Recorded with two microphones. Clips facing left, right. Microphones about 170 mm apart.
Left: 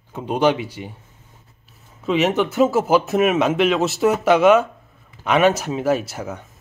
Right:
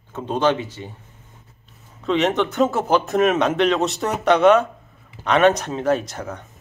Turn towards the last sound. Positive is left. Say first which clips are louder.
# even
turn(degrees=5)  # may be behind; listen again after turning